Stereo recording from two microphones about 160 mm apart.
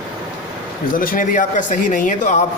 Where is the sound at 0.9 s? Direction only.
60° left (ahead or behind).